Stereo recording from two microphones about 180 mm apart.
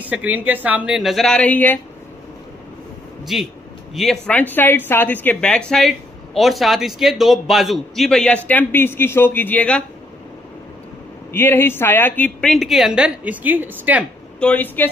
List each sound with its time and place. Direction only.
0.0 s speech: 10° right (ahead or behind); by 1.8 s 10° left (ahead or behind)
3.3 s a woman's voice: centre (ahead or behind)
11.3 s speech: 10° left (ahead or behind); by 14.0 s 10° right (ahead or behind)
14.4 s a woman's voice: 10° left (ahead or behind)